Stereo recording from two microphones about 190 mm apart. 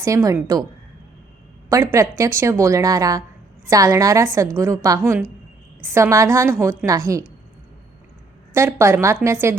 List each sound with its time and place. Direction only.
0.0 s a woman's voice: 15° right (ahead or behind)
1.7 s a woman's voice: 15° right (ahead or behind)
8.5 s a woman's voice: 15° right (ahead or behind)